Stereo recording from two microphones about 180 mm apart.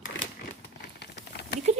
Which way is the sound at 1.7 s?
40° right (ahead or behind).